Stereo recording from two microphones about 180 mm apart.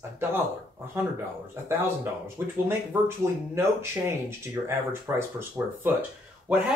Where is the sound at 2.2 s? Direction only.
15° right (ahead or behind).